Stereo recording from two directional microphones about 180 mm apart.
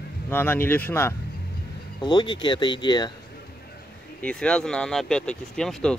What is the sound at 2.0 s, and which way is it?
Speech, 25° left (ahead or behind).